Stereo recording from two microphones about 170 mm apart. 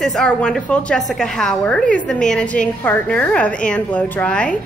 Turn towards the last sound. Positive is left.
turn(degrees=5)  # may be behind; listen again after turning